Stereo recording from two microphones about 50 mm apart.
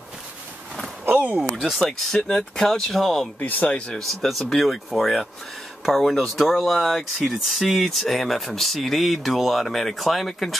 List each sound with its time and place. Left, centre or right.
1.6 s speech: centre
1.9 s speech: centre
3.3 s speech: left
3.9 s speech: centre